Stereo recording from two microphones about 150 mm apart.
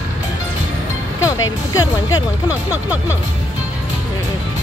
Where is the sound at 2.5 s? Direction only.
10° right (ahead or behind).